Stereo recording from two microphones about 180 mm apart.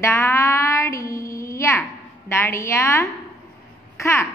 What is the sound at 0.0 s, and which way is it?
Music, 15° left (ahead or behind).